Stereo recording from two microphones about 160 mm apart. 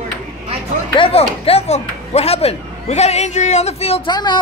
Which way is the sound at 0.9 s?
35° left (ahead or behind).